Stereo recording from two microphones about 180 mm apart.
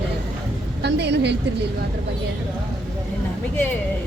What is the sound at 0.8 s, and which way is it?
Speech, 70° right (ahead or behind).